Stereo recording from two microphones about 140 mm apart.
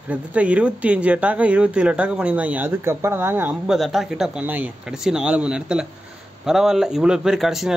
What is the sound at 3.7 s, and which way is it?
Speech, centre (ahead or behind).